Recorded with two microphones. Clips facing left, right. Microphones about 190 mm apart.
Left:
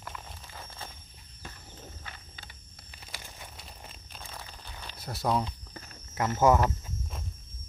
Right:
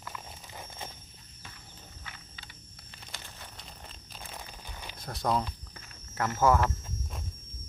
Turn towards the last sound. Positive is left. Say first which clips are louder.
# left 2 dB
turn(degrees=20)  # may be behind; listen again after turning